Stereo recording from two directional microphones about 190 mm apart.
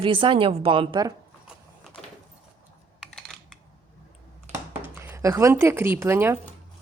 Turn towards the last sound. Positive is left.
turn(degrees=-15)  # may be behind; listen again after turning